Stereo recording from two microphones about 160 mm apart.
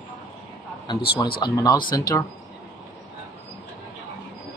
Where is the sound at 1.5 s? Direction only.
25° left (ahead or behind).